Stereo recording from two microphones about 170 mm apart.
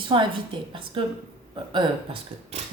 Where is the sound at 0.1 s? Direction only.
30° right (ahead or behind).